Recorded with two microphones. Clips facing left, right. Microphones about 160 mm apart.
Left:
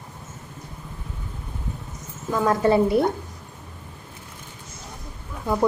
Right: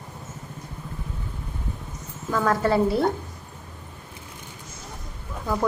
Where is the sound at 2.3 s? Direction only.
20° left (ahead or behind).